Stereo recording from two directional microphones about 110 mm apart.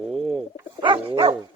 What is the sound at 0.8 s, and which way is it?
Dog, 55° right (ahead or behind).